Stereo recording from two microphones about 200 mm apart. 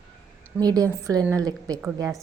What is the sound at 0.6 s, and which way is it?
A woman's voice, 20° right (ahead or behind).